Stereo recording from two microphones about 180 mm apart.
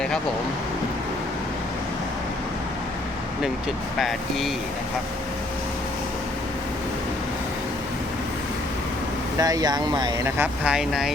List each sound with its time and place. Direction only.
3.9 s speech: centre (ahead or behind)
9.4 s speech: 20° right (ahead or behind)
10.3 s speech: 10° right (ahead or behind)